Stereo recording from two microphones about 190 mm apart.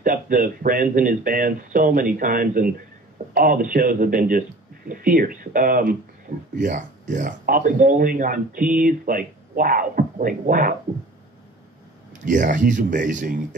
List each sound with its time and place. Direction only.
0.0 s speech: 45° right (ahead or behind)
12.3 s speech: 40° right (ahead or behind)